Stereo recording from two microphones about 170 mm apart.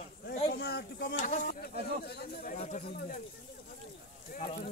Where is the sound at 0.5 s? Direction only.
70° left (ahead or behind).